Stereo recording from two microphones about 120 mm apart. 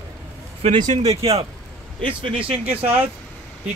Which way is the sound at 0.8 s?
75° right (ahead or behind).